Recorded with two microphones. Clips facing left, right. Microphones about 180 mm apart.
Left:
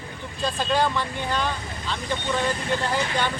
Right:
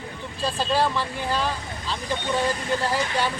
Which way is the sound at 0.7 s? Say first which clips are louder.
Even; 5° right (ahead or behind).